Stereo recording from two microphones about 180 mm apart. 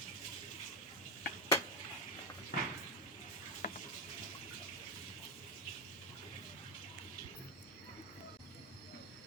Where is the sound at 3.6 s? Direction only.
45° left (ahead or behind).